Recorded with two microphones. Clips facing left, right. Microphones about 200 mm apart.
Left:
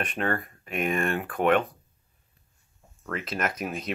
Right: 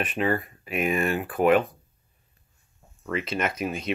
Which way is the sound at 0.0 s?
5° right (ahead or behind).